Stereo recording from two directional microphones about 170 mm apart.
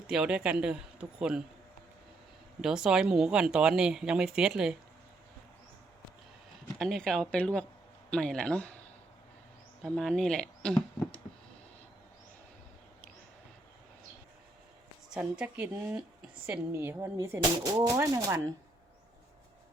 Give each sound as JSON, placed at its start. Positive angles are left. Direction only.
{"t": 0.1, "sound": "speech", "side_deg": -5}
{"t": 2.6, "sound": "speech", "side_deg": -5}
{"t": 6.7, "sound": "speech", "side_deg": 0}
{"t": 9.8, "sound": "speech", "side_deg": 5}
{"t": 15.1, "sound": "speech", "side_deg": -5}